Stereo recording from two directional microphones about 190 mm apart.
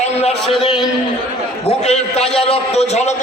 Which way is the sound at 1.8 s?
35° left (ahead or behind).